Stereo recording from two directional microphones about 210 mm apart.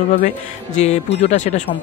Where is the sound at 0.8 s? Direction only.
30° left (ahead or behind).